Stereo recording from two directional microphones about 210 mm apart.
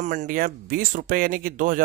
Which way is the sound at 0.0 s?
35° right (ahead or behind).